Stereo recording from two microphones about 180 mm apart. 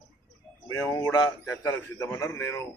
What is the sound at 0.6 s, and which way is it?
A man's voice, 15° left (ahead or behind).